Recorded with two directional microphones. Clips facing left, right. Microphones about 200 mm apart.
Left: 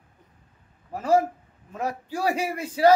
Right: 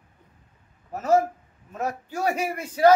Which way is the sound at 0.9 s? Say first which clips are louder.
Even; 30° left (ahead or behind).